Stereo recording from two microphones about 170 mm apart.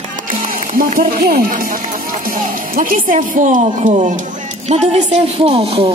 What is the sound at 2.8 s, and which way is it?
Speech, 55° right (ahead or behind).